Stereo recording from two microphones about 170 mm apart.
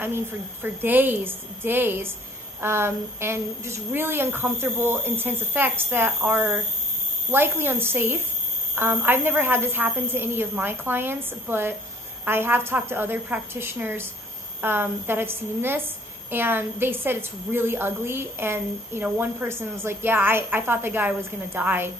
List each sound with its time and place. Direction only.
0.0 s a woman's voice: 10° right (ahead or behind)